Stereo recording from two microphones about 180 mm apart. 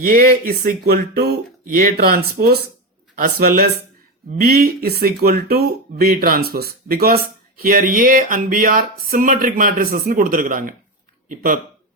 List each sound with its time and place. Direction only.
0.0 s speech: 50° right (ahead or behind)